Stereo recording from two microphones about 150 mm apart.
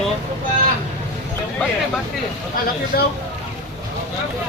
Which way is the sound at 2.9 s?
90° left.